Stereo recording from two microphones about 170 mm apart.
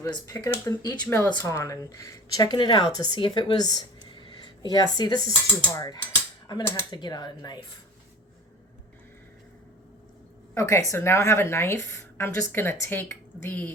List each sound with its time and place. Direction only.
0.0 s speech: 20° left (ahead or behind)
10.5 s a woman's voice: 15° left (ahead or behind)